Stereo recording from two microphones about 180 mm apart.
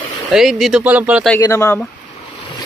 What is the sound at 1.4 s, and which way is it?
Speech, 15° left (ahead or behind).